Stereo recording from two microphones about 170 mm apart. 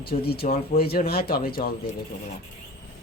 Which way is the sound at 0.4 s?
40° left (ahead or behind).